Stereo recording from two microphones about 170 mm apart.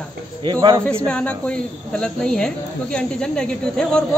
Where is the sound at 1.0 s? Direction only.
5° left (ahead or behind).